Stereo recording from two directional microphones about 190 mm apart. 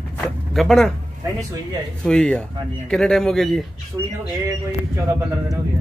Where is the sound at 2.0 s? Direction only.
5° left (ahead or behind).